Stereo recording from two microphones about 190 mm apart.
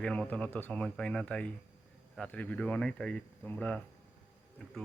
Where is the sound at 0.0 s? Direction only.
5° left (ahead or behind).